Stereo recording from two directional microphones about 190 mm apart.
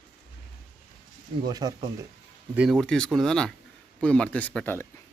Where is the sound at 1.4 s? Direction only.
20° right (ahead or behind).